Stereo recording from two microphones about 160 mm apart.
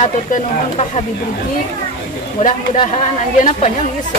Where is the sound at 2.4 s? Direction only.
40° left (ahead or behind).